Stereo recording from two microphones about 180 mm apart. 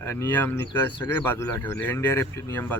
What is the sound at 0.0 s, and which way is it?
Speech, 15° left (ahead or behind).